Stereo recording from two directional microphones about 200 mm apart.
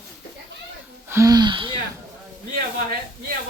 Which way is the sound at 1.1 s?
15° right (ahead or behind).